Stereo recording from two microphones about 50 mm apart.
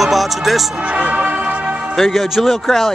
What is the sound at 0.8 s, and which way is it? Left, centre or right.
Music, right.